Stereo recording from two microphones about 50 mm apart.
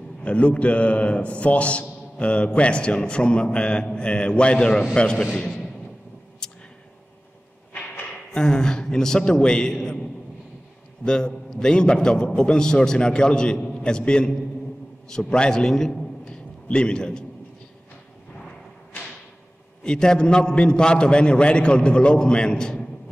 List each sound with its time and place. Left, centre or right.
0.2 s a man's voice: left
5.2 s a man's voice: centre
6.4 s a sound: centre
7.7 s a sound: left
8.1 s a man's voice: centre
11.1 s a man's voice: centre
19.8 s a man's voice: centre